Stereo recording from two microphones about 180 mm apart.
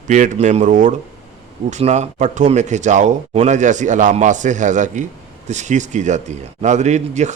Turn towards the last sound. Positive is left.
turn(degrees=-40)  # may be behind; listen again after turning